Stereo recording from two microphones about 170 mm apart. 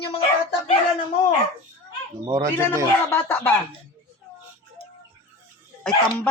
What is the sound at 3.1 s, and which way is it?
Speech, 10° left (ahead or behind).